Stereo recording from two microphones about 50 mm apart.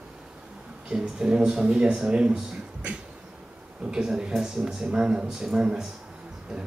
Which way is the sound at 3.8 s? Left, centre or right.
Centre.